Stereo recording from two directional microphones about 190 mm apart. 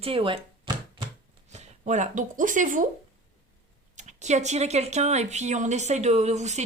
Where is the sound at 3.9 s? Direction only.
35° right (ahead or behind).